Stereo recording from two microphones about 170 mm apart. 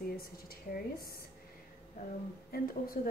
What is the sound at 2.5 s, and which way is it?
Speech, 55° left (ahead or behind).